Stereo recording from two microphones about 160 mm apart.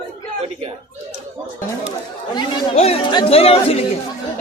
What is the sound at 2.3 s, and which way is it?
Speech, 40° left (ahead or behind).